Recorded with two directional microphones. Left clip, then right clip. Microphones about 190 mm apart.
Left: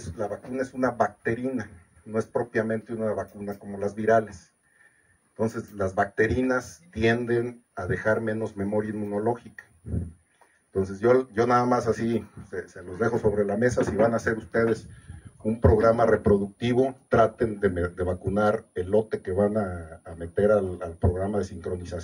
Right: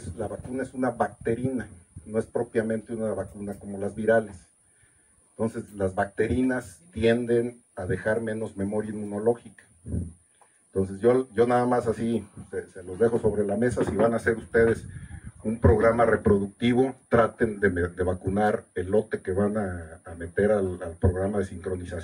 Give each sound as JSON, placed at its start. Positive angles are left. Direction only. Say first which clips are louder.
{"t": 0.2, "sound": "speech", "louder": "left 2 dB", "side_deg": 45}
{"t": 5.4, "sound": "speech", "louder": "left 1 dB", "side_deg": 50}
{"t": 10.7, "sound": "speech", "louder": "left 1 dB", "side_deg": 50}